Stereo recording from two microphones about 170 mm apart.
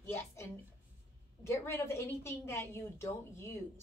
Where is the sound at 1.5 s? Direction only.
15° left (ahead or behind).